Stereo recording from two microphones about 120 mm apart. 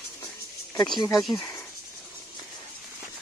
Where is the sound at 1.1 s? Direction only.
Centre (ahead or behind).